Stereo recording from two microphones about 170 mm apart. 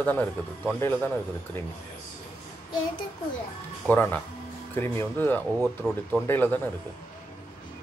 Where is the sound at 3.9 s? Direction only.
10° left (ahead or behind).